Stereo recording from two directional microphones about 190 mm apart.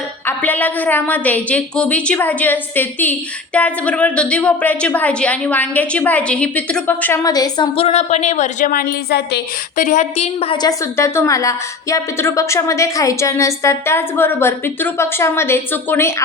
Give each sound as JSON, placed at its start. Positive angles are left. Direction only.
{"t": 0.3, "sound": "a woman's voice", "side_deg": 10}
{"t": 7.8, "sound": "a woman's voice", "side_deg": 35}
{"t": 9.7, "sound": "a woman's voice", "side_deg": 40}